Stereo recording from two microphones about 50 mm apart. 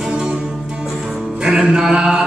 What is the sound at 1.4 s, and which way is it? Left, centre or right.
Music, centre.